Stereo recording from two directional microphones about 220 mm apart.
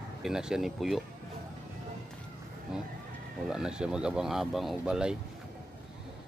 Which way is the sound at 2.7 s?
Centre (ahead or behind).